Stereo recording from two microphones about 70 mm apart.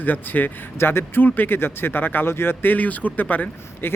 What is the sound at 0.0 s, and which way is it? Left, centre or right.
Speech, left.